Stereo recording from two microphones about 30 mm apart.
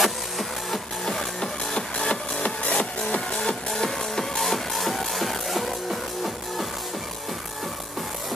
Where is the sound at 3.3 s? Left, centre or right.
Left.